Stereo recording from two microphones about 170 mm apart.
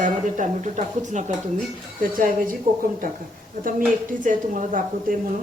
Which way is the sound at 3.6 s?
55° right (ahead or behind).